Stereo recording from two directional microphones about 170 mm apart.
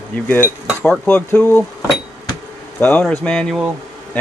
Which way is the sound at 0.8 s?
5° left (ahead or behind).